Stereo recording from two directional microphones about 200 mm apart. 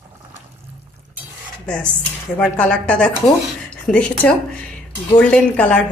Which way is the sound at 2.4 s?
5° left (ahead or behind).